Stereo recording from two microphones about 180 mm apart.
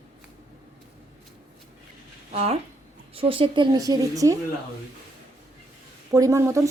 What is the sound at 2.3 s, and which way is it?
A woman's voice, 35° right (ahead or behind).